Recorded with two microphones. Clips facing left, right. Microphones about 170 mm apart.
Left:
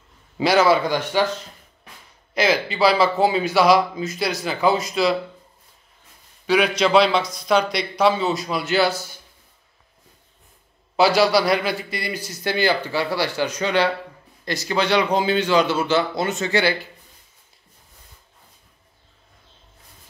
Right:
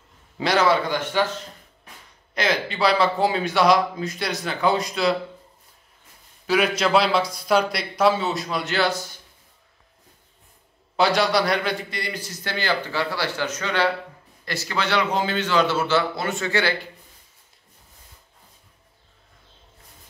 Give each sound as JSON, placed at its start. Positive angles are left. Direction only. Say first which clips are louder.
{"t": 0.4, "sound": "a man's voice", "louder": "left 3 dB", "side_deg": 10}
{"t": 2.3, "sound": "speech", "louder": "left 4 dB", "side_deg": 5}
{"t": 6.4, "sound": "speech", "louder": "left 2 dB", "side_deg": -5}
{"t": 11.0, "sound": "a man's voice", "louder": "left 3 dB", "side_deg": 5}